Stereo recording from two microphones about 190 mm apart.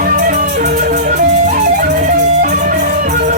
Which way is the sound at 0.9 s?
40° right (ahead or behind).